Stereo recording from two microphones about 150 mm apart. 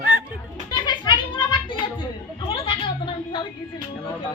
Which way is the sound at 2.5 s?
35° left (ahead or behind).